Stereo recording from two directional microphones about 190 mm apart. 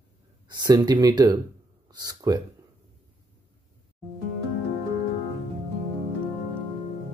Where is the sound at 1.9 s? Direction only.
20° right (ahead or behind).